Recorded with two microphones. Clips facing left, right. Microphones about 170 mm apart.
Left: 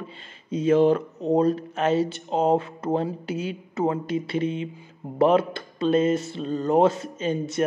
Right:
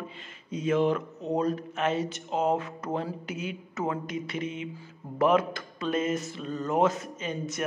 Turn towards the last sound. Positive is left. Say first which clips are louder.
# left 8 dB
turn(degrees=30)  # may be behind; listen again after turning